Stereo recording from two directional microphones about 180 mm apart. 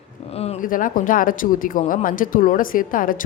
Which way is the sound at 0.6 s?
50° left (ahead or behind).